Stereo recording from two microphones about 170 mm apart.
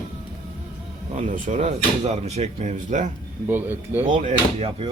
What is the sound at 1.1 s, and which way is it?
Speech, 40° right (ahead or behind).